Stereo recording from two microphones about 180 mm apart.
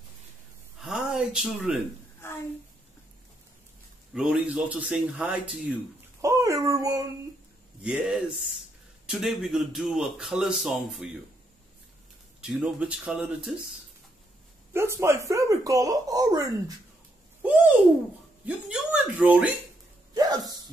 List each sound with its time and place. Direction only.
0.7 s a sound: centre (ahead or behind)
2.2 s a sound: 15° left (ahead or behind)
4.1 s speech: 5° right (ahead or behind)
6.2 s babbling: 20° right (ahead or behind)
7.8 s a man's voice: 5° right (ahead or behind)
12.4 s a man's voice: 5° right (ahead or behind)
14.7 s speech: 15° right (ahead or behind)
18.4 s speech: 5° right (ahead or behind)
20.2 s a sound: 20° right (ahead or behind)